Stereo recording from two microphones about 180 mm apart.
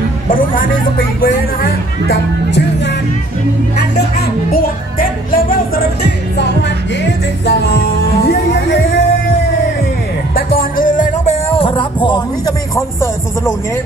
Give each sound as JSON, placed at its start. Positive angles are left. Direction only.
{"t": 0.3, "sound": "speech", "side_deg": 50}
{"t": 4.5, "sound": "music", "side_deg": 50}
{"t": 7.0, "sound": "music", "side_deg": 65}
{"t": 10.3, "sound": "music", "side_deg": 55}